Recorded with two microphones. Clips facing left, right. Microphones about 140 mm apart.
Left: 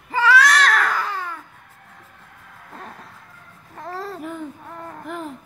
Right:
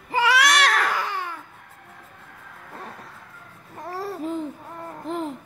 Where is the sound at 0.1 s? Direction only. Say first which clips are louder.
Left 3 dB; 15° right (ahead or behind).